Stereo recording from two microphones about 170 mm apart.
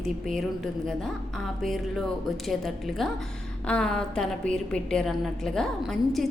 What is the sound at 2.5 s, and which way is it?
A woman's voice, centre (ahead or behind).